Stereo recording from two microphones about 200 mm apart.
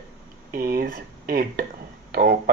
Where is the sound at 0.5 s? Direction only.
50° right (ahead or behind).